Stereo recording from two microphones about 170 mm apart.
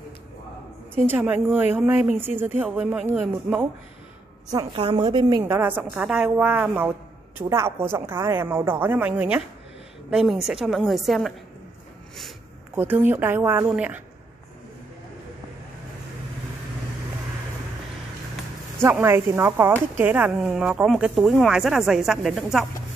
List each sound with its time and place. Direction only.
0.9 s a woman's voice: 10° right (ahead or behind)
4.7 s a woman's voice: 30° right (ahead or behind)
5.4 s a woman's voice: 10° right (ahead or behind)
12.7 s a woman's voice: 10° right (ahead or behind)
18.8 s speech: 15° right (ahead or behind)